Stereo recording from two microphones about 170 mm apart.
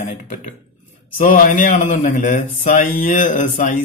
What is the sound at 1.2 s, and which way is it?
Speech, 50° left (ahead or behind).